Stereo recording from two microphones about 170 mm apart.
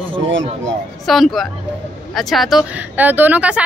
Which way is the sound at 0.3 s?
90° right.